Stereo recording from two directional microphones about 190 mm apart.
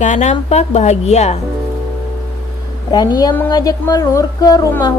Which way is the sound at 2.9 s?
20° left (ahead or behind).